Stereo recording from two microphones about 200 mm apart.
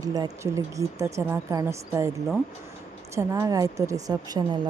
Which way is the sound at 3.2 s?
15° right (ahead or behind).